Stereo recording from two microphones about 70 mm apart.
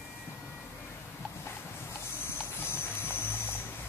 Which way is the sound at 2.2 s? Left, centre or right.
Left.